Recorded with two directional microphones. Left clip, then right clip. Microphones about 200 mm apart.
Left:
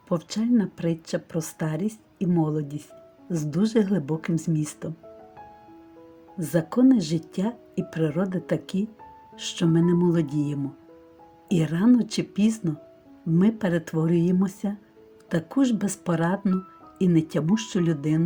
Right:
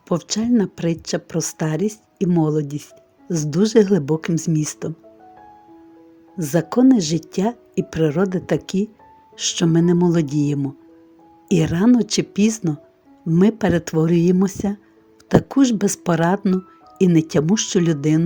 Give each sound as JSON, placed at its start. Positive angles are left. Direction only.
{"t": 0.1, "sound": "speech", "side_deg": -45}
{"t": 6.4, "sound": "speech", "side_deg": -45}